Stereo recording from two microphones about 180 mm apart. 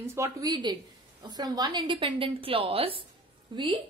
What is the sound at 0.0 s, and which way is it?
A woman's voice, 15° right (ahead or behind).